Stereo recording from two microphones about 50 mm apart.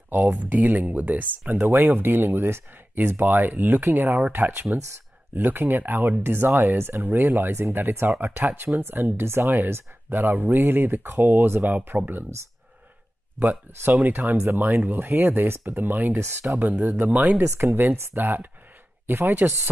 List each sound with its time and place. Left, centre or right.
0.1 s speech: right
10.1 s speech: right
11.9 s speech: right
14.0 s speech: right
17.9 s speech: right